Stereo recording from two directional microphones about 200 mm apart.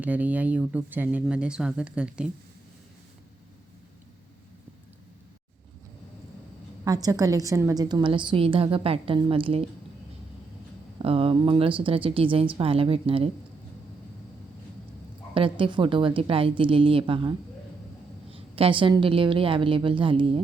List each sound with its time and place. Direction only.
0.0 s speech: 10° right (ahead or behind)
6.8 s a woman's voice: 20° right (ahead or behind)
11.0 s a woman's voice: 30° right (ahead or behind)
15.4 s a woman's voice: 25° right (ahead or behind)